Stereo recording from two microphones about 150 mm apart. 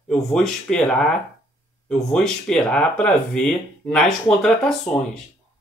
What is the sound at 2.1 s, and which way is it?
Speech, 5° left (ahead or behind).